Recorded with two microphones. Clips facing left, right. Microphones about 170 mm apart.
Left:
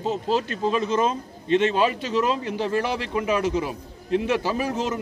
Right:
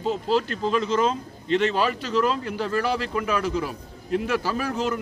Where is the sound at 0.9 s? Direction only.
20° left (ahead or behind).